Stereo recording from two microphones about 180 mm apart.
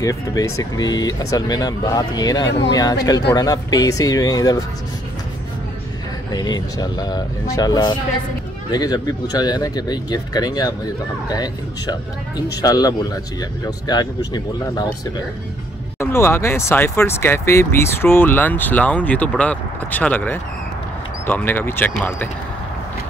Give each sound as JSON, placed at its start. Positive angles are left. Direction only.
{"t": 0.0, "sound": "speech", "side_deg": 20}
{"t": 6.3, "sound": "speech", "side_deg": 20}
{"t": 16.0, "sound": "speech", "side_deg": 15}